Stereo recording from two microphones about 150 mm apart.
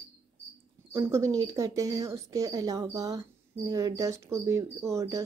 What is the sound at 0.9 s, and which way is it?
Speech, 20° right (ahead or behind).